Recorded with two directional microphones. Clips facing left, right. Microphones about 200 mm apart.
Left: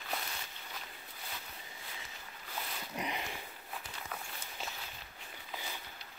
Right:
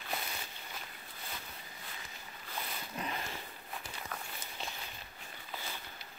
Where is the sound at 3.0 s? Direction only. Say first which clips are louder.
Left 1 dB; 15° left (ahead or behind).